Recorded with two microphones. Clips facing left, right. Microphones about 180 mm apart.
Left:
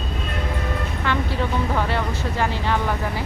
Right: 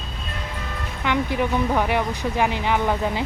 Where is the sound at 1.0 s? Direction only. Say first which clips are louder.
Right 3 dB; 15° right (ahead or behind).